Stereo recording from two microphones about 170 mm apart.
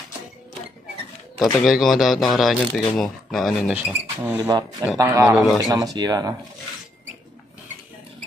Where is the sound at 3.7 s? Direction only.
10° right (ahead or behind).